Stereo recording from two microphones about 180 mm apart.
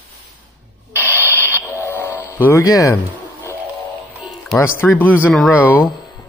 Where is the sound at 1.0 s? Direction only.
10° right (ahead or behind).